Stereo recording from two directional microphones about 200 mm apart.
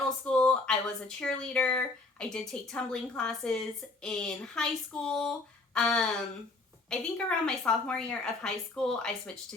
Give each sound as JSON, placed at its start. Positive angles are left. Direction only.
{"t": 0.3, "sound": "a woman's voice", "side_deg": 5}